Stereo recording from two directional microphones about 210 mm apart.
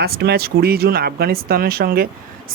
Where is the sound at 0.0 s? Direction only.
50° right (ahead or behind).